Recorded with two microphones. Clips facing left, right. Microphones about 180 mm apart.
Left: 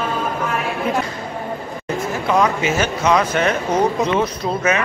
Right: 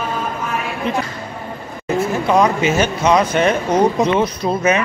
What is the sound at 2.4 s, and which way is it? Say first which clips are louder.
A man's voice: right 2 dB; 20° right (ahead or behind).